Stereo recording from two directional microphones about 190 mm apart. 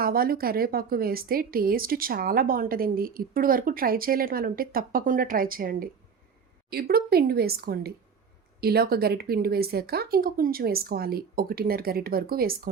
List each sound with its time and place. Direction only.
0.0 s a woman's voice: 50° right (ahead or behind)